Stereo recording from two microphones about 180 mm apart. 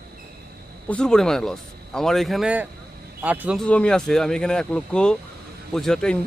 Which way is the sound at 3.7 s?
5° left (ahead or behind).